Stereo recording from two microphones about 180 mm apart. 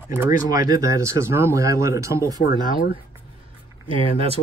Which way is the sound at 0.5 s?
20° right (ahead or behind).